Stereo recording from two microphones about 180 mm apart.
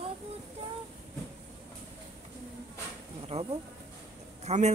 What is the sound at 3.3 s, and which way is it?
Insect, 35° right (ahead or behind).